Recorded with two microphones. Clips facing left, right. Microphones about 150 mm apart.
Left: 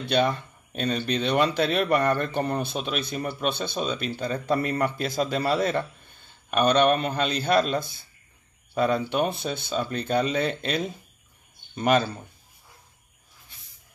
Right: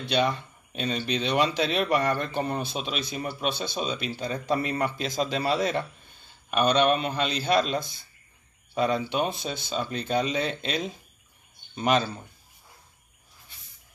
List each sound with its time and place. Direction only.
0.0 s speech: 50° left (ahead or behind)